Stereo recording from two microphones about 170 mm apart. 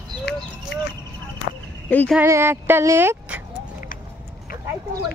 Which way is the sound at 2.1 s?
15° right (ahead or behind).